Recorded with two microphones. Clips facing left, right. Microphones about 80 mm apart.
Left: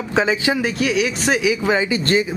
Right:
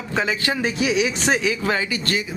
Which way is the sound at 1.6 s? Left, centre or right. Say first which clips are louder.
Left 4 dB; centre.